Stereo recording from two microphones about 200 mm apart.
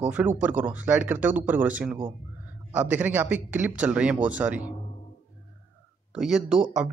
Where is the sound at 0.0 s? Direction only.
10° right (ahead or behind).